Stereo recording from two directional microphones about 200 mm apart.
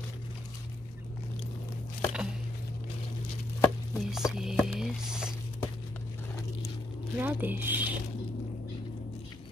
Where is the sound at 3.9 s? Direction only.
Centre (ahead or behind).